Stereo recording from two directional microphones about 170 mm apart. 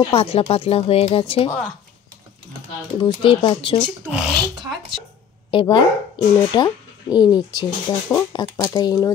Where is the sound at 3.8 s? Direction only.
5° right (ahead or behind).